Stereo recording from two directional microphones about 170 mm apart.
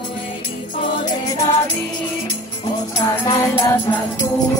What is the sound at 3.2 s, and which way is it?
Music, 15° left (ahead or behind).